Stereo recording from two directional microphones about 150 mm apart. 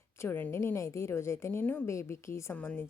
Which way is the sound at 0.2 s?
15° left (ahead or behind).